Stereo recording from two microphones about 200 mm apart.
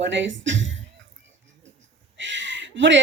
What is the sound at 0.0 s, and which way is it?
Speech, 65° right (ahead or behind).